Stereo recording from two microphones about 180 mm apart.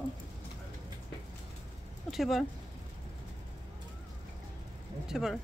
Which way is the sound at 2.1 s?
Centre (ahead or behind).